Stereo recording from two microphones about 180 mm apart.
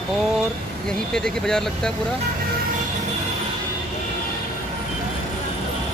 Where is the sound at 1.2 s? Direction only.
5° left (ahead or behind).